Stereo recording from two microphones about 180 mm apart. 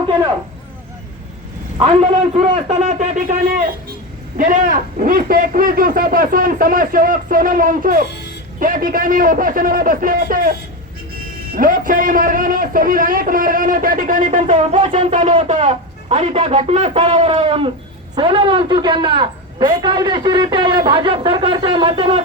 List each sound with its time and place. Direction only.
2.4 s speech: 45° right (ahead or behind)
4.4 s speech: 50° right (ahead or behind)
11.5 s a man's voice: 50° right (ahead or behind); by 22.2 s 30° right (ahead or behind)